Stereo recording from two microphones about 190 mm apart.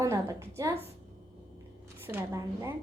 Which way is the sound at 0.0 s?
15° right (ahead or behind).